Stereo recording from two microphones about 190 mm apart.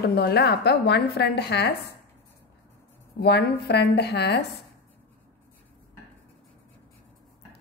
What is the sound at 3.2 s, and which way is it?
A woman's voice, 60° left (ahead or behind).